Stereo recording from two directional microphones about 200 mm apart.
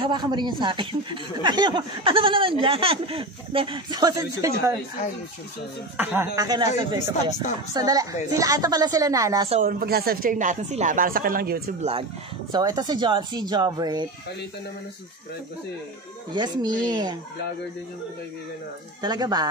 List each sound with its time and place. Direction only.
0.0 s speech: 20° right (ahead or behind)
5.9 s a woman's voice: 10° right (ahead or behind)
9.7 s speech: 50° right (ahead or behind)
12.5 s speech: 20° right (ahead or behind)
16.3 s speech: 20° right (ahead or behind)
18.9 s speech: 20° right (ahead or behind)